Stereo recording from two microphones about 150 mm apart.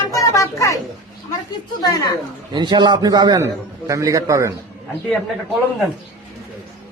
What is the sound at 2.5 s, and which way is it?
A man's voice, 30° right (ahead or behind).